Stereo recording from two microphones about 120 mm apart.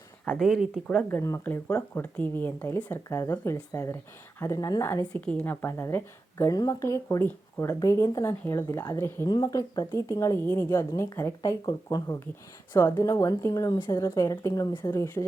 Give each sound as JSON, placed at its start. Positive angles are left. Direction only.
{"t": 0.3, "sound": "speech", "side_deg": 0}
{"t": 1.0, "sound": "speech", "side_deg": 20}
{"t": 5.2, "sound": "speech", "side_deg": 10}
{"t": 14.7, "sound": "speech", "side_deg": 40}
{"t": 14.9, "sound": "speech", "side_deg": 20}